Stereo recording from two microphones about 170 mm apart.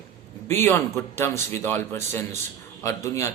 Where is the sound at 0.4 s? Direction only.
15° left (ahead or behind).